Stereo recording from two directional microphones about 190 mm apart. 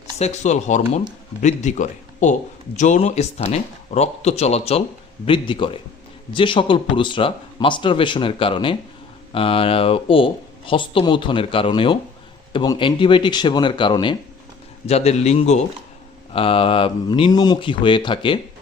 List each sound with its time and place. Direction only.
0.2 s speech: 35° left (ahead or behind)